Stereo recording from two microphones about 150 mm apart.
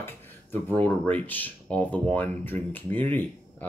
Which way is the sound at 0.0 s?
15° left (ahead or behind).